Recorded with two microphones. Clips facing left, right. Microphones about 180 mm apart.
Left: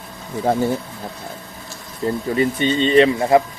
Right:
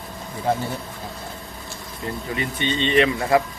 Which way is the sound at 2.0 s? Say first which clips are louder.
Left 9 dB; 35° left (ahead or behind).